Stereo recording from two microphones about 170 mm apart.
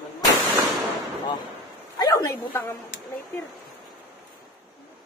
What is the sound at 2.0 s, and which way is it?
Speech, 15° left (ahead or behind).